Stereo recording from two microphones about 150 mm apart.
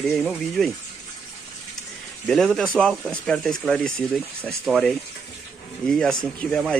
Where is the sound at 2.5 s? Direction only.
5° left (ahead or behind).